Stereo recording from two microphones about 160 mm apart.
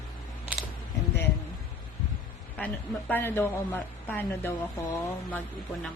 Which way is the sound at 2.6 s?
10° left (ahead or behind).